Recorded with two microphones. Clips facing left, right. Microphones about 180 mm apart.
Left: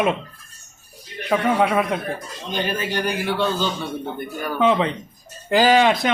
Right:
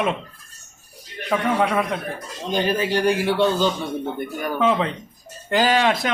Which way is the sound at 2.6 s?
30° right (ahead or behind).